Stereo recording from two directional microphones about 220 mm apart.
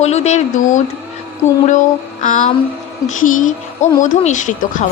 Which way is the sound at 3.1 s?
35° left (ahead or behind).